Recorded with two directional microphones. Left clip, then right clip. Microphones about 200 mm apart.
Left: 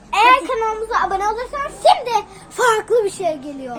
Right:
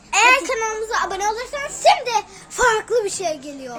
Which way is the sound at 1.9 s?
5° right (ahead or behind).